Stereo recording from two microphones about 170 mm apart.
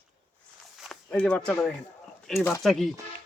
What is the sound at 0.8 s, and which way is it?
Speech, 5° left (ahead or behind).